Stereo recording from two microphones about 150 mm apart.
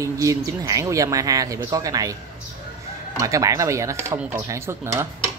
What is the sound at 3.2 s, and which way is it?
Speech, 20° right (ahead or behind).